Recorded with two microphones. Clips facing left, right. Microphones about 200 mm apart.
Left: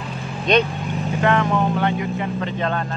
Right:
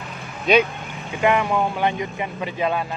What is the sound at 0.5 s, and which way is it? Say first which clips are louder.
Speech: even; 5° right (ahead or behind).